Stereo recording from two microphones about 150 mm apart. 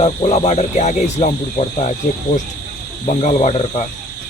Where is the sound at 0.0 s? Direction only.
45° left (ahead or behind).